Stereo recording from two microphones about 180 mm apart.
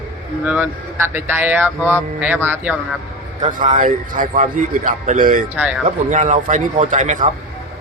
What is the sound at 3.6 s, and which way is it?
A man's voice, 45° right (ahead or behind).